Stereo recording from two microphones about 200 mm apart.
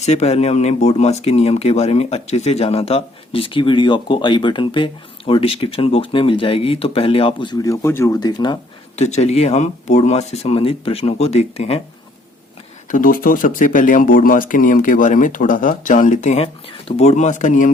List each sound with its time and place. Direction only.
0.0 s speech: 35° left (ahead or behind)
9.0 s speech: 35° left (ahead or behind)
12.9 s speech: 45° left (ahead or behind)